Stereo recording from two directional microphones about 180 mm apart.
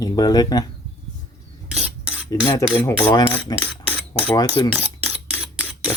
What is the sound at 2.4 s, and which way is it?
Speech, 25° left (ahead or behind).